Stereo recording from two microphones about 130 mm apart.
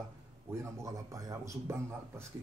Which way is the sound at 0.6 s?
25° right (ahead or behind).